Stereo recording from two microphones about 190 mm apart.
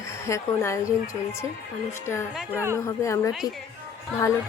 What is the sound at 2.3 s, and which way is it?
Speech, 10° right (ahead or behind).